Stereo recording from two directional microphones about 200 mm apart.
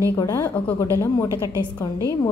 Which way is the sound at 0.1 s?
15° left (ahead or behind).